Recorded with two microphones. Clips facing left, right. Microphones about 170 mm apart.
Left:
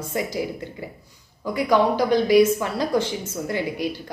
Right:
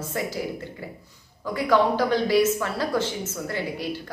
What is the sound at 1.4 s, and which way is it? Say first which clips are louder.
A woman's voice: left 2 dB; 15° left (ahead or behind).